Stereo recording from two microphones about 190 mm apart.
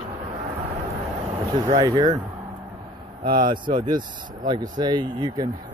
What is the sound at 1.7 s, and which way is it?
Speech, 25° right (ahead or behind).